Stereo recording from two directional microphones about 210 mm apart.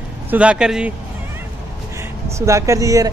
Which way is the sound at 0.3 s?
5° right (ahead or behind).